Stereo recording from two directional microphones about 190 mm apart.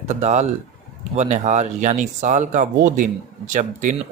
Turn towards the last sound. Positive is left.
turn(degrees=-45)  # may be behind; listen again after turning